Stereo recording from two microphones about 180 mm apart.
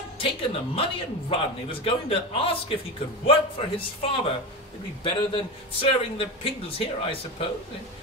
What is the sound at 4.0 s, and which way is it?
A man's voice, 30° left (ahead or behind).